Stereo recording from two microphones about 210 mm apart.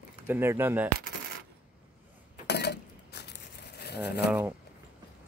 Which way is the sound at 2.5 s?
50° left (ahead or behind).